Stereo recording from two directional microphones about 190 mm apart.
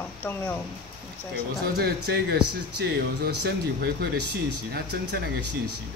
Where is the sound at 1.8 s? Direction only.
60° right (ahead or behind).